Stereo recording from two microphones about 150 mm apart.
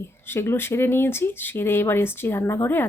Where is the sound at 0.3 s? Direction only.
15° left (ahead or behind).